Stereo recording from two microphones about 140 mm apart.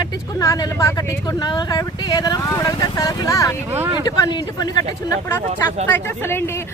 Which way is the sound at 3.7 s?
15° right (ahead or behind).